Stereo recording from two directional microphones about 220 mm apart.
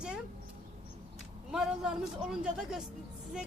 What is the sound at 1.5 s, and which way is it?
A man's voice, centre (ahead or behind).